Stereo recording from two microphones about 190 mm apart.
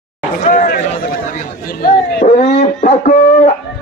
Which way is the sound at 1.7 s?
50° left (ahead or behind).